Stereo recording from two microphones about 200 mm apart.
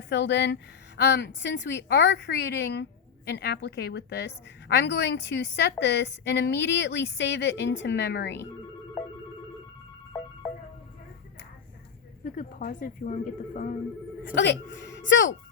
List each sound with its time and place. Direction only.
0.1 s a woman's voice: 60° left (ahead or behind)
12.2 s a woman's voice: 45° left (ahead or behind)
14.3 s a woman's voice: 65° left (ahead or behind)